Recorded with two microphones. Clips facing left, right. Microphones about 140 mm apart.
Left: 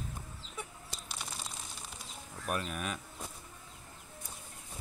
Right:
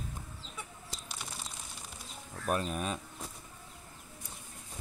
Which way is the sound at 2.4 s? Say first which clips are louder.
Right 4 dB; 30° right (ahead or behind).